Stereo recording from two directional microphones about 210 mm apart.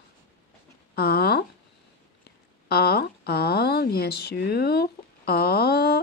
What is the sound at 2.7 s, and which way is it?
Speech, 50° left (ahead or behind).